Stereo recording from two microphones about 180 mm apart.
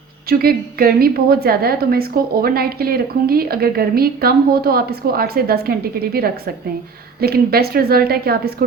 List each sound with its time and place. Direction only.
0.3 s a woman's voice: 55° right (ahead or behind)